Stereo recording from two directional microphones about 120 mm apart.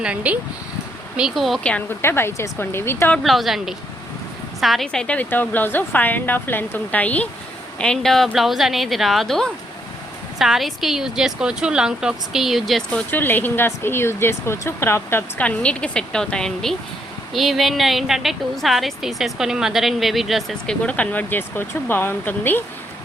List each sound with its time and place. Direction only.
0.0 s speech: 10° right (ahead or behind); by 3.2 s 20° left (ahead or behind)
3.2 s a woman's voice: centre (ahead or behind)
13.1 s a woman's voice: 15° left (ahead or behind)